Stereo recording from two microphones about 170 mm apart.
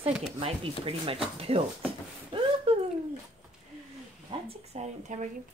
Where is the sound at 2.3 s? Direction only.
35° right (ahead or behind).